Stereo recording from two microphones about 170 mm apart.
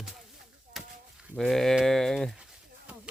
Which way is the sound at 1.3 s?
Centre (ahead or behind).